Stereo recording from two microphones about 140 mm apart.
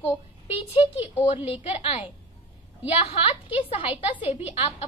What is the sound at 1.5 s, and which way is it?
A woman's voice, 45° left (ahead or behind).